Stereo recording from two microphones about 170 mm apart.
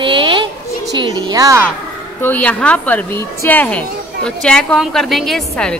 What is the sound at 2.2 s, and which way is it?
A woman's voice, 10° left (ahead or behind).